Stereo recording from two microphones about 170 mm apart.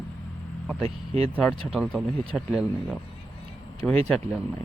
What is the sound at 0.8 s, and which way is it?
Speech, 35° right (ahead or behind).